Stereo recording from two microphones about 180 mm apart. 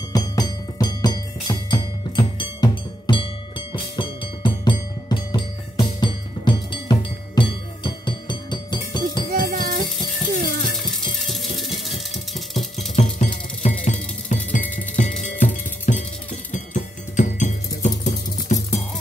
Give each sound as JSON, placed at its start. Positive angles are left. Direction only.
{"t": 0.1, "sound": "music", "side_deg": 20}
{"t": 9.3, "sound": "music", "side_deg": -50}
{"t": 11.1, "sound": "music", "side_deg": 0}
{"t": 13.6, "sound": "music", "side_deg": 40}
{"t": 15.9, "sound": "cowbell", "side_deg": 40}
{"t": 16.5, "sound": "music", "side_deg": 40}